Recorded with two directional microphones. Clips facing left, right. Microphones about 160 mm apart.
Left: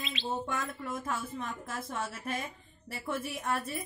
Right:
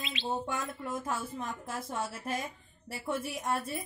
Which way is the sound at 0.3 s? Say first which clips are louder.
Right 1 dB; 30° right (ahead or behind).